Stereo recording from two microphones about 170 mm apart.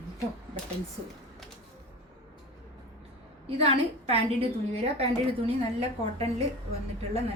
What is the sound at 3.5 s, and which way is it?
A woman's voice, 35° right (ahead or behind).